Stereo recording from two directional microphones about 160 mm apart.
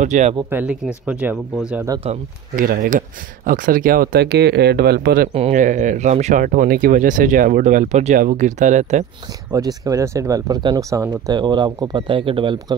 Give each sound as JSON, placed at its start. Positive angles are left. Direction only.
{"t": 0.0, "sound": "speech", "side_deg": -50}
{"t": 0.5, "sound": "speech", "side_deg": -10}
{"t": 2.0, "sound": "speech", "side_deg": -40}
{"t": 2.5, "sound": "speech", "side_deg": -65}
{"t": 5.5, "sound": "speech", "side_deg": -55}
{"t": 9.5, "sound": "speech", "side_deg": -25}